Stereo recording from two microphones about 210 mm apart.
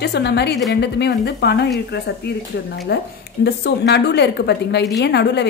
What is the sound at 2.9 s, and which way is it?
Speech, 50° left (ahead or behind).